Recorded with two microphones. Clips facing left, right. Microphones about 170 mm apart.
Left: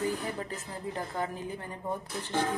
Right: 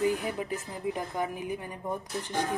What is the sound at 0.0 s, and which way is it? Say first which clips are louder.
Speech: right 4 dB; 15° right (ahead or behind).